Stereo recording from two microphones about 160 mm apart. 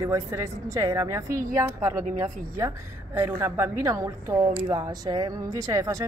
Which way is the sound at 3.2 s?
15° right (ahead or behind).